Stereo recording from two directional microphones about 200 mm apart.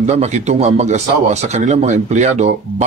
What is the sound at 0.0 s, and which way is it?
Speech, 35° right (ahead or behind).